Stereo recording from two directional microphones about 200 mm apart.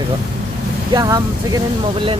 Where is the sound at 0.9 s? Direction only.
20° right (ahead or behind).